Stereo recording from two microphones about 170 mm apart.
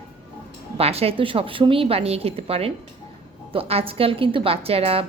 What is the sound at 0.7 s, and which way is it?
A woman's voice, 35° right (ahead or behind).